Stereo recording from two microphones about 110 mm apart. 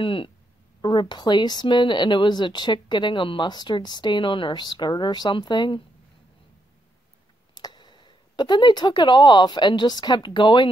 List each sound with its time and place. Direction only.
0.0 s speech: 50° left (ahead or behind)
7.5 s speech: 40° left (ahead or behind)